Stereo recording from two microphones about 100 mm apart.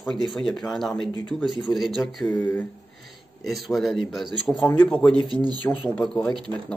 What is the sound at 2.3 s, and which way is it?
Speech, 15° left (ahead or behind).